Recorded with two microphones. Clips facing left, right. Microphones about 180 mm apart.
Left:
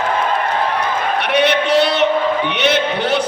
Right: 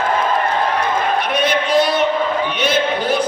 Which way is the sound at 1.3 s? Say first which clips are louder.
Left 6 dB; 70° left (ahead or behind).